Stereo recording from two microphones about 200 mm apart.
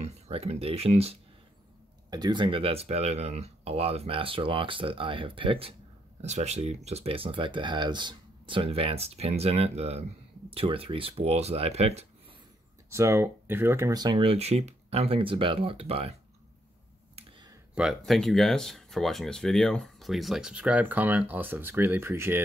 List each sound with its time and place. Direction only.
0.0 s speech: 30° right (ahead or behind)
2.0 s speech: 20° right (ahead or behind)
12.9 s speech: 15° right (ahead or behind); by 16.2 s 30° right (ahead or behind)
17.1 s a sound: 20° right (ahead or behind)
17.7 s speech: centre (ahead or behind)